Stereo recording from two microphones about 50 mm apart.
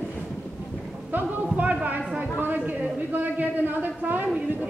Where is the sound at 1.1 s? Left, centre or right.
Right.